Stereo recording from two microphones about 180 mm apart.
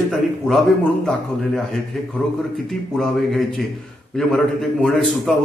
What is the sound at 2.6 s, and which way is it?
A man's voice, centre (ahead or behind).